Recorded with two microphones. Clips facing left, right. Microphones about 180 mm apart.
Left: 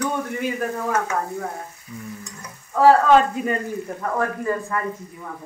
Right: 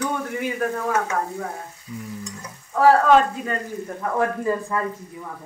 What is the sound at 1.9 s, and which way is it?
Speech, 15° right (ahead or behind).